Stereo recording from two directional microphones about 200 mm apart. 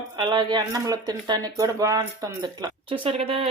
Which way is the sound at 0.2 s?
20° right (ahead or behind).